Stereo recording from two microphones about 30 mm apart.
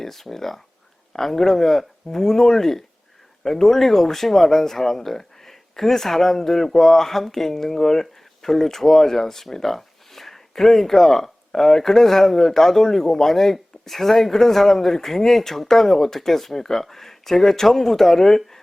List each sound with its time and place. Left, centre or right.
0.0 s speech: centre